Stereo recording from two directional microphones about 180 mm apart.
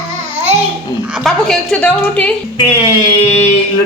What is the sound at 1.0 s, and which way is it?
A woman's voice, centre (ahead or behind).